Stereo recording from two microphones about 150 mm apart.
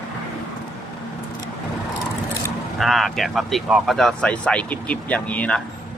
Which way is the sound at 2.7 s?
Centre (ahead or behind).